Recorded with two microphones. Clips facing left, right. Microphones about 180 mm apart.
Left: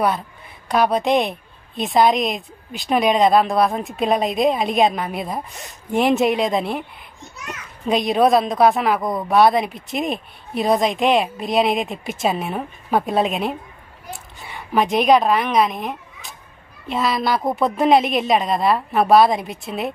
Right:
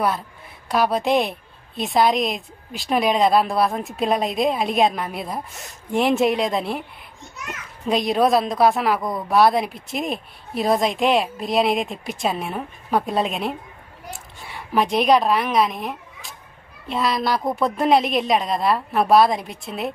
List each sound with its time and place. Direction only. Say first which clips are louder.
0.7 s a woman's voice: left 2 dB; centre (ahead or behind)
7.9 s a woman's voice: left 2 dB; centre (ahead or behind)